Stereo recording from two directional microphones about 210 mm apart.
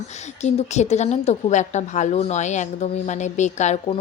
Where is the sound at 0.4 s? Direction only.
30° left (ahead or behind).